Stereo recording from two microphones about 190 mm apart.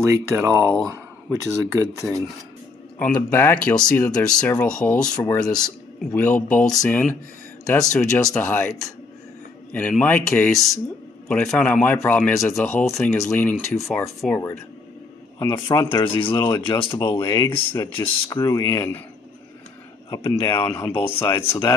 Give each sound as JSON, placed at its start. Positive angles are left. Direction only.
{"t": 0.0, "sound": "speech", "side_deg": -15}
{"t": 3.0, "sound": "speech", "side_deg": 10}
{"t": 15.3, "sound": "speech", "side_deg": 20}
{"t": 20.1, "sound": "speech", "side_deg": 20}